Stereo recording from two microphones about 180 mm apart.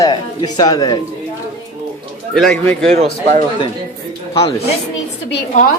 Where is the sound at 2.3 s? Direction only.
5° left (ahead or behind).